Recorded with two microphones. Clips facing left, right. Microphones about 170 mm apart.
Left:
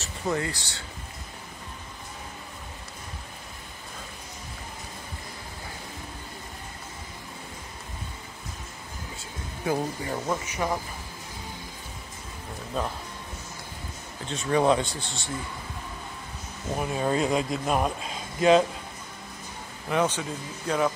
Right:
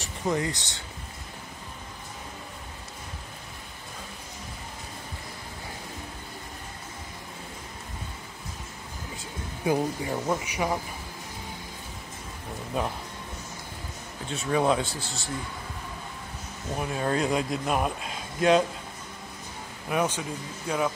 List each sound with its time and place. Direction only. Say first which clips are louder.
0.0 s speech: right 1 dB; 15° right (ahead or behind)
9.7 s speech: right 2 dB; 10° right (ahead or behind)
12.7 s speech: right 1 dB; 15° right (ahead or behind)
14.2 s speech: left 2 dB; 5° right (ahead or behind)
16.7 s speech: left 1 dB; 5° left (ahead or behind)
19.9 s speech: left 2 dB; 10° right (ahead or behind)